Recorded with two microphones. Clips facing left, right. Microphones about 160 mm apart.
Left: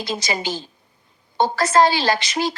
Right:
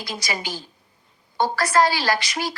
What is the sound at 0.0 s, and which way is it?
A woman's voice, 25° left (ahead or behind).